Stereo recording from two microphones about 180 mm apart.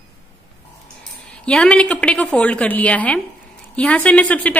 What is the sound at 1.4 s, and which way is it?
A woman's voice, 5° left (ahead or behind).